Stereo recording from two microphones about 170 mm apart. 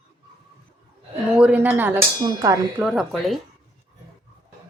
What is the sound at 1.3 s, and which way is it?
Speech, 5° right (ahead or behind).